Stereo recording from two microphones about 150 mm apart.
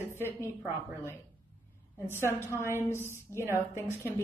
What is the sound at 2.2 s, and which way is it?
A woman's voice, 15° left (ahead or behind).